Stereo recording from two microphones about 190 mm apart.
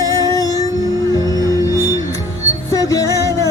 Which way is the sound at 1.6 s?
20° left (ahead or behind).